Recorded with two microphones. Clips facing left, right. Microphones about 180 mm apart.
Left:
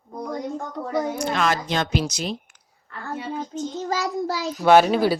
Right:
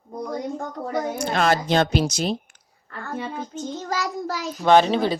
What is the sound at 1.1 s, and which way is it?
Speech, 35° right (ahead or behind).